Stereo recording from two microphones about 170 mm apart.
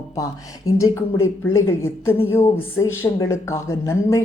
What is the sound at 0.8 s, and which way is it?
Speech, 15° left (ahead or behind).